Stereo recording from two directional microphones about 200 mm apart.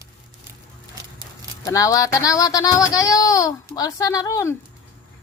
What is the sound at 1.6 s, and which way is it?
A woman's voice, 15° left (ahead or behind).